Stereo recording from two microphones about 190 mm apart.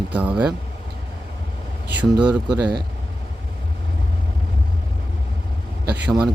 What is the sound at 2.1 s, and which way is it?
Speech, 25° right (ahead or behind).